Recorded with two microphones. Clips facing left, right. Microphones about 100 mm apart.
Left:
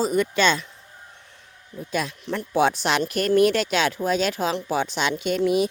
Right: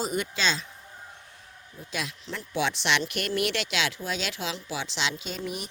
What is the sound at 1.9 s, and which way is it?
A woman's voice, 50° left (ahead or behind).